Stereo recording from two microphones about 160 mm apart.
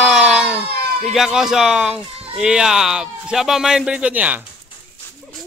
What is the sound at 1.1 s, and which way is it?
Speech, 5° right (ahead or behind).